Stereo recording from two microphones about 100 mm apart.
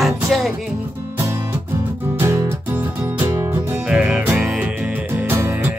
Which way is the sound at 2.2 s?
25° right (ahead or behind).